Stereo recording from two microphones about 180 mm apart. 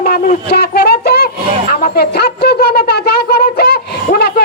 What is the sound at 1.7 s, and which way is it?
Wind instrument, 60° left (ahead or behind).